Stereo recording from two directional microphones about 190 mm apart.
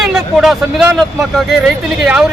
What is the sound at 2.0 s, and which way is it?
Speech, centre (ahead or behind).